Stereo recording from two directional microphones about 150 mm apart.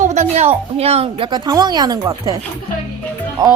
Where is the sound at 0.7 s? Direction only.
45° right (ahead or behind); by 2.3 s 25° right (ahead or behind).